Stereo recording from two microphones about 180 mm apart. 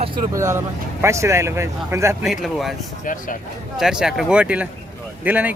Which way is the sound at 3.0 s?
45° left (ahead or behind).